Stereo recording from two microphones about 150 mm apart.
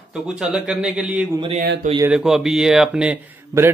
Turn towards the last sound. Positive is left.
turn(degrees=-20)  # may be behind; listen again after turning